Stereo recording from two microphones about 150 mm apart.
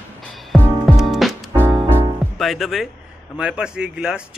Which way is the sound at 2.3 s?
Centre (ahead or behind).